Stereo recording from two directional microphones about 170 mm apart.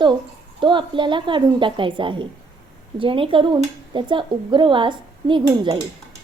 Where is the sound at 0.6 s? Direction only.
30° right (ahead or behind).